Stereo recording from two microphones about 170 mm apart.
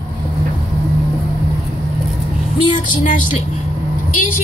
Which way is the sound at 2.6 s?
30° left (ahead or behind).